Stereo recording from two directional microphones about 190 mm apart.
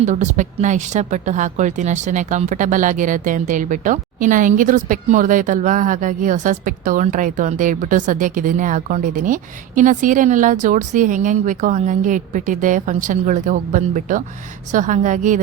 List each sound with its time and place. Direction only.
0.0 s a woman's voice: 40° right (ahead or behind)